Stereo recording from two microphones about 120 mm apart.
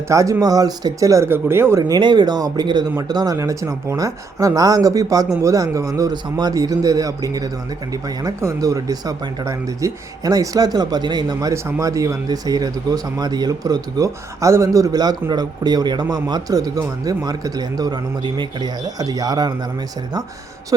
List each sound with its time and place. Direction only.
0.1 s speech: 25° right (ahead or behind)
1.9 s a man's voice: 40° right (ahead or behind)